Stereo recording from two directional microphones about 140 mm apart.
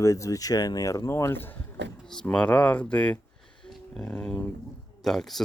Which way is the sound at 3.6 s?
5° left (ahead or behind).